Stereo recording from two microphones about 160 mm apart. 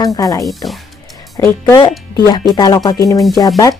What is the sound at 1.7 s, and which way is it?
Speech, 25° left (ahead or behind).